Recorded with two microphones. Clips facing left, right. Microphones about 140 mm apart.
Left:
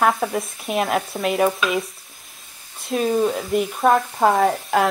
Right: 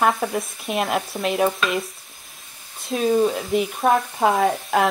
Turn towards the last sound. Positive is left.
turn(degrees=0)  # may be behind; listen again after turning